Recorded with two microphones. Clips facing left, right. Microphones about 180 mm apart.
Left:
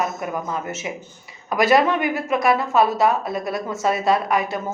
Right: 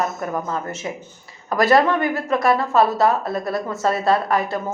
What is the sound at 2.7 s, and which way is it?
Speech, centre (ahead or behind).